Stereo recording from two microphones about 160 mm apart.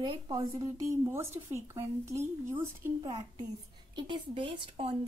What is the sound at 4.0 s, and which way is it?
Speech, 30° right (ahead or behind).